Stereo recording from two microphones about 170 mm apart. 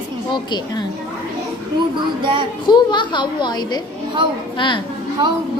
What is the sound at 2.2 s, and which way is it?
Speech, 30° right (ahead or behind).